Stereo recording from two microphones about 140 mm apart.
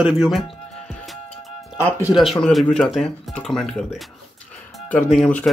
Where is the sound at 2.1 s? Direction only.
Centre (ahead or behind).